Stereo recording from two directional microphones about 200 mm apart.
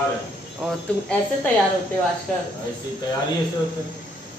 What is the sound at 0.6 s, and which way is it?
Speech, centre (ahead or behind).